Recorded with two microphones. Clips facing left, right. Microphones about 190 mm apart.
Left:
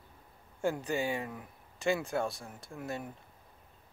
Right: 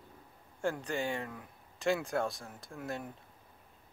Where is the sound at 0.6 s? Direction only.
5° left (ahead or behind).